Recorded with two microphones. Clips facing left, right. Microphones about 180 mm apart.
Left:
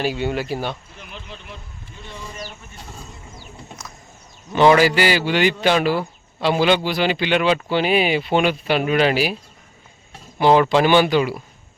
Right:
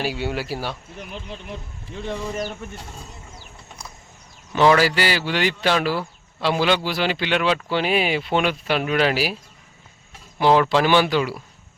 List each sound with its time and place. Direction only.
0.0 s speech: 10° right (ahead or behind)
0.9 s speech: 45° right (ahead or behind)
4.5 s a man's voice: centre (ahead or behind)